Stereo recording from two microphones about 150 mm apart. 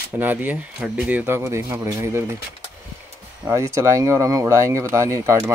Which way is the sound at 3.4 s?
20° right (ahead or behind).